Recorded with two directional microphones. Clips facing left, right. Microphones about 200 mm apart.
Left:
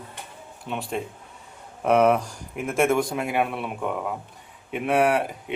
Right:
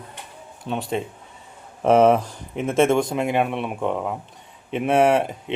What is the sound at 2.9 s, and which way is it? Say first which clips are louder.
Speech: right 3 dB; 25° right (ahead or behind).